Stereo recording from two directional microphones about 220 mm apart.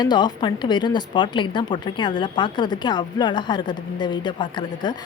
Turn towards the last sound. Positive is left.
turn(degrees=20)  # may be behind; listen again after turning